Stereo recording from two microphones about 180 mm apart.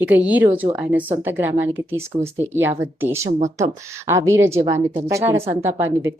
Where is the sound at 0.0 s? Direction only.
10° right (ahead or behind).